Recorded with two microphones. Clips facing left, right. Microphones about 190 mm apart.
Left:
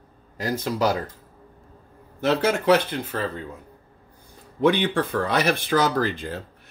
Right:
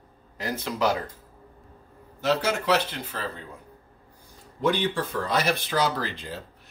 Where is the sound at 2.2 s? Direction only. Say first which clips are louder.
Left 4 dB; 55° left (ahead or behind).